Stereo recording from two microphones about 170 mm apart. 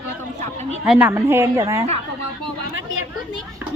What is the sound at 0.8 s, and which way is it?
Speech, 5° right (ahead or behind).